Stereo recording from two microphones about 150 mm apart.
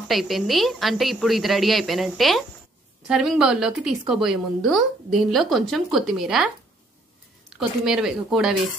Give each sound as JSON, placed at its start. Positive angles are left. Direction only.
{"t": 0.1, "sound": "speech", "side_deg": 0}